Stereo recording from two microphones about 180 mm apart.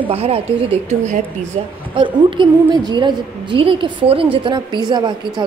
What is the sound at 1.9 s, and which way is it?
A woman's voice, 25° right (ahead or behind).